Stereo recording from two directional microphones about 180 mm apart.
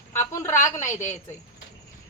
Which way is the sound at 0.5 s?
45° left (ahead or behind).